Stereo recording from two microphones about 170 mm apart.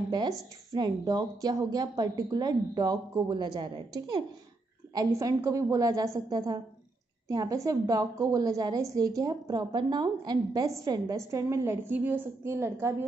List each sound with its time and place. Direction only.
0.1 s a woman's voice: 25° right (ahead or behind)